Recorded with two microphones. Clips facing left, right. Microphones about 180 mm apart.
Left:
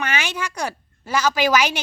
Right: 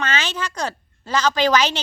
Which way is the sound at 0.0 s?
15° left (ahead or behind).